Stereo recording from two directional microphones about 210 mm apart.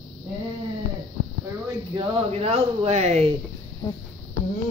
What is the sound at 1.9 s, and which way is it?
Speech, 30° right (ahead or behind).